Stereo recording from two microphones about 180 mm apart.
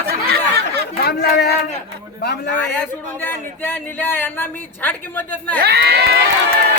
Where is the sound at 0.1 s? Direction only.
60° right (ahead or behind).